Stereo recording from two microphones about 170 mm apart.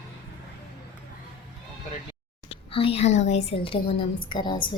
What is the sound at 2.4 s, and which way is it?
A woman's voice, 35° left (ahead or behind).